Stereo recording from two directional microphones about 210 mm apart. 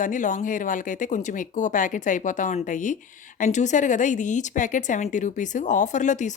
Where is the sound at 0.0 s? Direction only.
35° left (ahead or behind).